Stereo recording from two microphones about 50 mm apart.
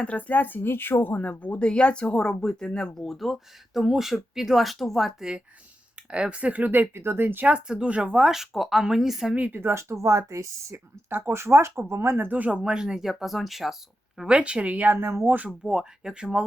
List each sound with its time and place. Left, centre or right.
0.0 s a woman's voice: left
1.1 s speech: left; by 5.1 s centre
6.0 s a sound: right
6.3 s speech: right
6.9 s speech: right
7.4 s speech: centre
8.3 s speech: centre
9.5 s speech: right
9.9 s speech: right
11.1 s speech: right
12.3 s speech: right; by 13.7 s centre
14.3 s speech: right
14.9 s speech: right
15.4 s speech: centre